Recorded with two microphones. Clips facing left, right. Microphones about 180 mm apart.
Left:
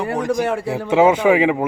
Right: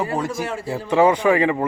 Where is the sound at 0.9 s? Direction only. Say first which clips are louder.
Left 2 dB; 20° left (ahead or behind).